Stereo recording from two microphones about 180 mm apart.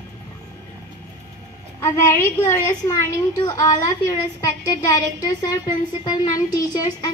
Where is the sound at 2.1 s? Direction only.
15° left (ahead or behind).